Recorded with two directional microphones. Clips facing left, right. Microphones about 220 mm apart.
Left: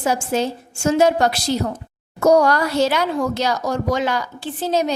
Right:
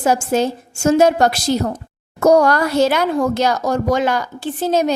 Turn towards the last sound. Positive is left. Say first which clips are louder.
# right 3 dB
turn(degrees=-50)  # may be behind; listen again after turning